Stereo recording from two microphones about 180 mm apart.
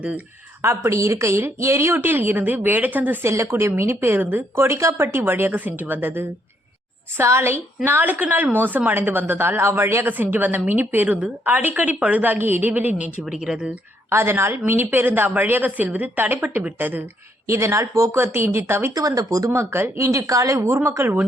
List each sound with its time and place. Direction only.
0.6 s speech: 15° right (ahead or behind)